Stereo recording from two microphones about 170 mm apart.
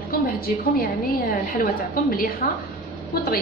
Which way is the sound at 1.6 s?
60° left (ahead or behind).